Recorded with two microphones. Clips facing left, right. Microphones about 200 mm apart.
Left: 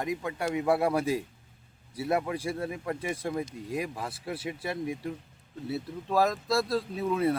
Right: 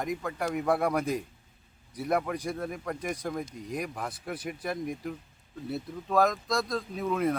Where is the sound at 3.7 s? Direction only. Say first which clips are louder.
Even; 30° left (ahead or behind).